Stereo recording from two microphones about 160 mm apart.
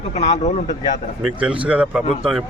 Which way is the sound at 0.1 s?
45° left (ahead or behind).